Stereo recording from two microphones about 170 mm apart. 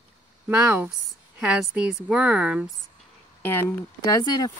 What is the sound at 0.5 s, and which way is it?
Speech, 5° right (ahead or behind).